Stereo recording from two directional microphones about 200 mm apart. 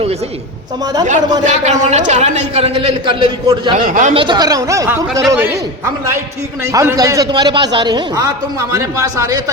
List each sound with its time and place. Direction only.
1.5 s a man's voice: 35° right (ahead or behind)
3.8 s speech: 45° right (ahead or behind)
4.1 s a man's voice: 25° right (ahead or behind)
6.7 s a man's voice: 15° right (ahead or behind)